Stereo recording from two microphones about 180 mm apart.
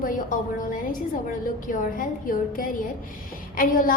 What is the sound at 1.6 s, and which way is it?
A woman's voice, 45° left (ahead or behind).